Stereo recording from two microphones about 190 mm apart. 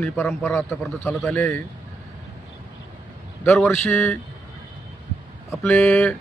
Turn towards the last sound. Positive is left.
turn(degrees=15)  # may be behind; listen again after turning